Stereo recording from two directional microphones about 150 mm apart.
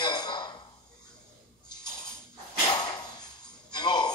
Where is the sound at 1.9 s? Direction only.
25° left (ahead or behind).